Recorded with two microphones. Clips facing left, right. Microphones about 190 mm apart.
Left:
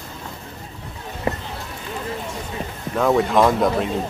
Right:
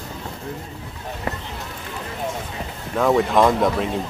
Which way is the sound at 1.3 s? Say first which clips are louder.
Left 5 dB; 25° left (ahead or behind).